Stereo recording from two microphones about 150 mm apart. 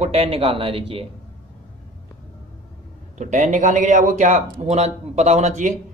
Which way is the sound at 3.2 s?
55° right (ahead or behind).